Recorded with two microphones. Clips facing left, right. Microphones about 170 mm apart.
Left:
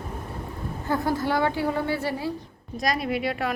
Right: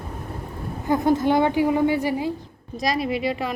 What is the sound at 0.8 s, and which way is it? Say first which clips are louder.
A woman's voice: right 6 dB; 20° right (ahead or behind).